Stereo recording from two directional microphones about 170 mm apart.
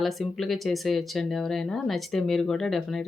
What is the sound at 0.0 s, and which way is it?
Speech, centre (ahead or behind).